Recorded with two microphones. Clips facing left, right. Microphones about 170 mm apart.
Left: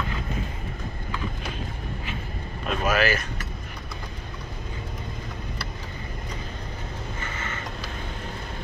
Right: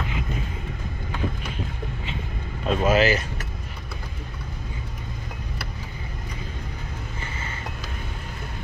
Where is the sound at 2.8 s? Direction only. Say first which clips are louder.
Right 3 dB; 20° right (ahead or behind).